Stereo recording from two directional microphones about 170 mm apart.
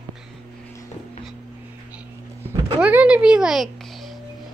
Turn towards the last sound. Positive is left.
turn(degrees=-5)  # may be behind; listen again after turning